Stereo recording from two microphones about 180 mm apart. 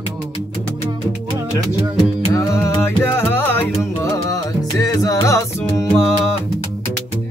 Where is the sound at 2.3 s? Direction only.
15° left (ahead or behind).